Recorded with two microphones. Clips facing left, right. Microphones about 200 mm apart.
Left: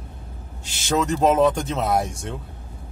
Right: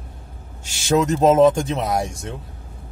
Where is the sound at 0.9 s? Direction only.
20° right (ahead or behind).